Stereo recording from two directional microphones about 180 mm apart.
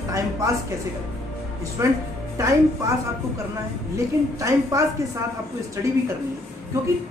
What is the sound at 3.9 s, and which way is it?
Speech, 15° right (ahead or behind).